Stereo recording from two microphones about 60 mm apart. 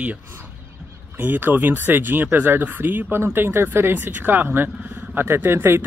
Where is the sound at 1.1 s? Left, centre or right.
Right.